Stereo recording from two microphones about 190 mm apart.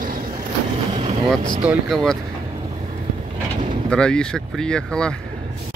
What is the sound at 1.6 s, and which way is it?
Speech, centre (ahead or behind).